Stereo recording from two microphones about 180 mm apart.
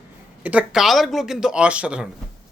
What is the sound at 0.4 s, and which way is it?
Speech, 5° right (ahead or behind).